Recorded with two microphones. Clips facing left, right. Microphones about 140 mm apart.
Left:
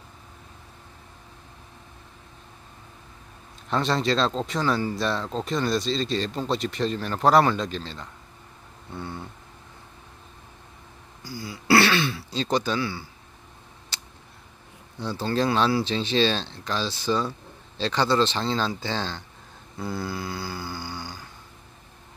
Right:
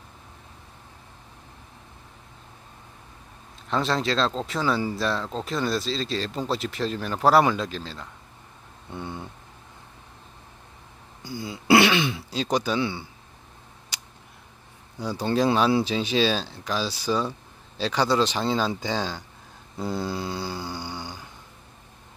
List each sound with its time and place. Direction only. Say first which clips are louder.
3.6 s speech: left 1 dB; centre (ahead or behind)
8.9 s speech: right 1 dB; 15° right (ahead or behind)
11.2 s throat clearing: right 2 dB; 20° right (ahead or behind)
12.4 s speech: even; 10° right (ahead or behind)
12.8 s snoring: right 2 dB; 20° right (ahead or behind)
13.9 s a sound: even; 10° right (ahead or behind)
15.0 s speech: right 2 dB; 10° right (ahead or behind)
19.8 s snoring: right 2 dB; 25° right (ahead or behind)